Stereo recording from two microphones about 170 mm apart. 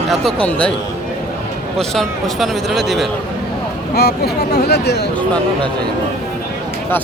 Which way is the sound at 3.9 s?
70° left (ahead or behind).